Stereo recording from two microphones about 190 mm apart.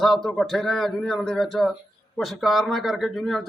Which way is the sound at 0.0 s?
Centre (ahead or behind).